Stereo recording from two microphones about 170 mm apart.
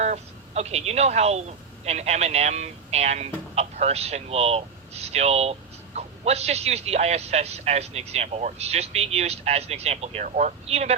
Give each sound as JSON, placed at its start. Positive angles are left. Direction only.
{"t": 0.0, "sound": "speech", "side_deg": -40}